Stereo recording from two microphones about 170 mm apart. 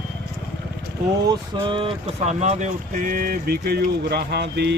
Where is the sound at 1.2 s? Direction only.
25° right (ahead or behind).